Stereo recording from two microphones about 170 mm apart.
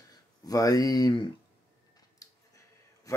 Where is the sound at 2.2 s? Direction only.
20° left (ahead or behind).